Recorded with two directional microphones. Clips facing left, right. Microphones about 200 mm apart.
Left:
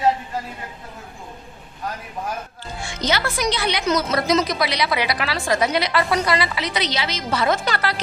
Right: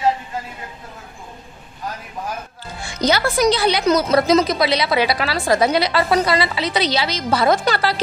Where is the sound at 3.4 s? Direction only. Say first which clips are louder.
Right 6 dB; 35° right (ahead or behind).